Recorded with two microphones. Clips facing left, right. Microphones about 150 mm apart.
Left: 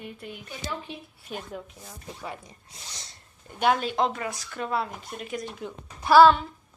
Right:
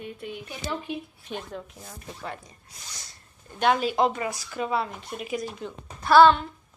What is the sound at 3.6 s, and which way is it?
Speech, centre (ahead or behind).